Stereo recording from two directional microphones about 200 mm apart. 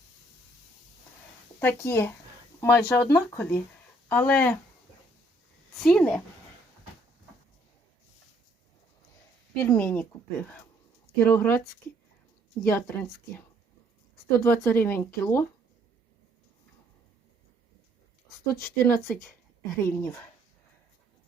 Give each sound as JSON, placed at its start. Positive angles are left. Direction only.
{"t": 1.5, "sound": "speech", "side_deg": 10}
{"t": 5.7, "sound": "a woman's voice", "side_deg": 5}
{"t": 9.6, "sound": "speech", "side_deg": 10}
{"t": 12.6, "sound": "speech", "side_deg": 10}
{"t": 14.3, "sound": "speech", "side_deg": 10}
{"t": 18.5, "sound": "speech", "side_deg": 15}